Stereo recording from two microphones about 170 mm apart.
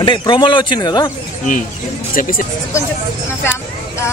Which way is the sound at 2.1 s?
55° left (ahead or behind).